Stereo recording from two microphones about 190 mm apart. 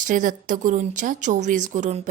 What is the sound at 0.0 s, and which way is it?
A woman's voice, 45° right (ahead or behind).